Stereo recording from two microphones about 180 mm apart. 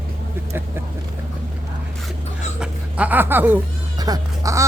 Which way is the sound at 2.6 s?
5° right (ahead or behind).